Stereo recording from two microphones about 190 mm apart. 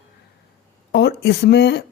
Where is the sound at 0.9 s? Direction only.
60° left (ahead or behind).